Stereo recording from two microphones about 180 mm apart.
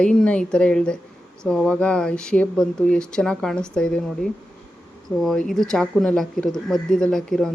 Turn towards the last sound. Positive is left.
turn(degrees=5)  # may be behind; listen again after turning